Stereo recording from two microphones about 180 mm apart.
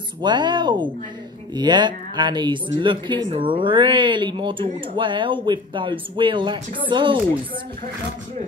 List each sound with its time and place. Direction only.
0.2 s speech: 25° right (ahead or behind)